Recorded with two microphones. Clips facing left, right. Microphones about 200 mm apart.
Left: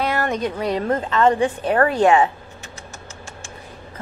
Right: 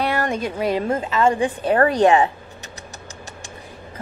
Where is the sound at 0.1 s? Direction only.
15° right (ahead or behind).